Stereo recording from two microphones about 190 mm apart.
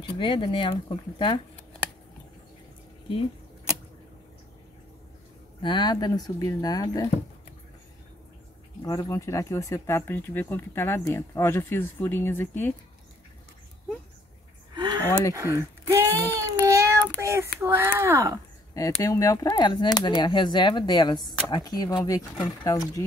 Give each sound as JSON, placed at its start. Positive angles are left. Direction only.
{"t": 0.2, "sound": "speech", "side_deg": 25}
{"t": 5.6, "sound": "speech", "side_deg": 25}
{"t": 8.8, "sound": "speech", "side_deg": 20}
{"t": 14.8, "sound": "a sound", "side_deg": -20}
{"t": 15.0, "sound": "speech", "side_deg": 10}
{"t": 15.3, "sound": "a sound", "side_deg": -15}
{"t": 17.2, "sound": "a child's voice", "side_deg": -15}
{"t": 18.9, "sound": "speech", "side_deg": 15}